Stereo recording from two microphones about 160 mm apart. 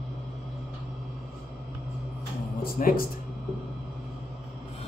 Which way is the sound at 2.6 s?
65° left (ahead or behind).